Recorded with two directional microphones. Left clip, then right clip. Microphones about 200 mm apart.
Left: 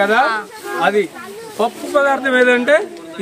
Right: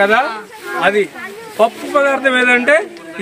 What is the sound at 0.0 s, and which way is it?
A man's voice, 45° right (ahead or behind).